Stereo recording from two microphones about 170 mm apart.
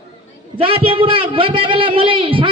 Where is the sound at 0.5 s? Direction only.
30° right (ahead or behind).